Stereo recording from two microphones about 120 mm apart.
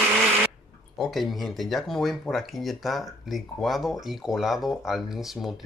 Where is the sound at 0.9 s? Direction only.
Centre (ahead or behind).